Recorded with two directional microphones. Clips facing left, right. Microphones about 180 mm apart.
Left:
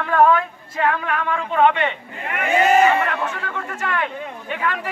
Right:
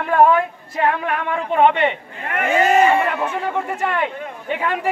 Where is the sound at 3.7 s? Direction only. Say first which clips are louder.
Right 3 dB; 15° right (ahead or behind).